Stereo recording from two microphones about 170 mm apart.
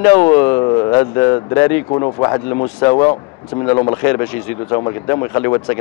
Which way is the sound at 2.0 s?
20° left (ahead or behind).